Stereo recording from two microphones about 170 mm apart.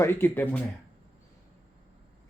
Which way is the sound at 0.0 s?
15° left (ahead or behind).